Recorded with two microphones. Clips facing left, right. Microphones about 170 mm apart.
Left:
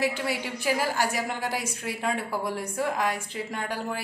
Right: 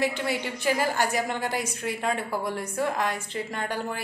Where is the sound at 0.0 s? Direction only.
5° left (ahead or behind).